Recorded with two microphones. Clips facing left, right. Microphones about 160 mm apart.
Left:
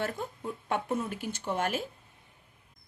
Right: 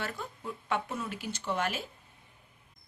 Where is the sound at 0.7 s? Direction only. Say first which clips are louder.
Left 3 dB; 50° left (ahead or behind).